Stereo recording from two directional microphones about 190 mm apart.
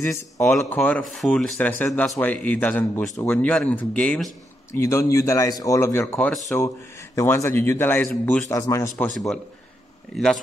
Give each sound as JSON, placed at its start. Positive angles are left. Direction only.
{"t": 0.0, "sound": "speech", "side_deg": 15}
{"t": 10.1, "sound": "speech", "side_deg": 0}